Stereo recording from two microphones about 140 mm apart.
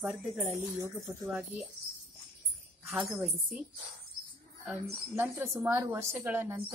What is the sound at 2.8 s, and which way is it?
Speech, 15° right (ahead or behind).